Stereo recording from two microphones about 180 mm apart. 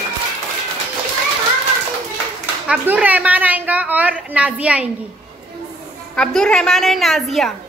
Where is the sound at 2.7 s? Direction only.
10° right (ahead or behind).